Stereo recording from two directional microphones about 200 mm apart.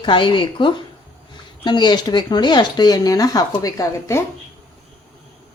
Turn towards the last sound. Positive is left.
turn(degrees=15)  # may be behind; listen again after turning